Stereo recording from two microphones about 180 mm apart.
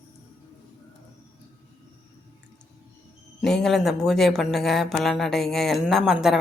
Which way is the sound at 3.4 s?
Centre (ahead or behind).